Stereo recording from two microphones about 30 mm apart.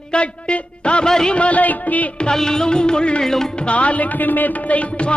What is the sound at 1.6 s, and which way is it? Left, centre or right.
Music, left.